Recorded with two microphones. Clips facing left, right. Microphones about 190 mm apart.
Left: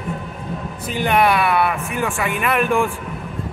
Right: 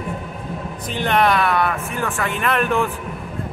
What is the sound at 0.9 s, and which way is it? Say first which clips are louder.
Speech: left 1 dB; 10° left (ahead or behind).